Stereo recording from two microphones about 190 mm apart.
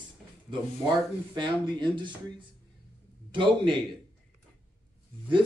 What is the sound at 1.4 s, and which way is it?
Speech, 25° right (ahead or behind).